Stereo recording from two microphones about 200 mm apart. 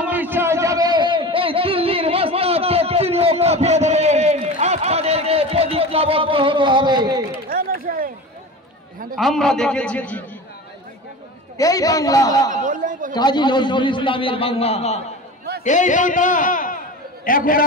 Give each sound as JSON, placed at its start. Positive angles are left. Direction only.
{"t": 0.0, "sound": "a sound", "side_deg": -10}
{"t": 7.4, "sound": "a sound", "side_deg": -45}
{"t": 9.1, "sound": "a man's voice", "side_deg": 0}
{"t": 11.5, "sound": "a man's voice", "side_deg": 15}
{"t": 12.5, "sound": "speech", "side_deg": -40}
{"t": 13.1, "sound": "a man's voice", "side_deg": 20}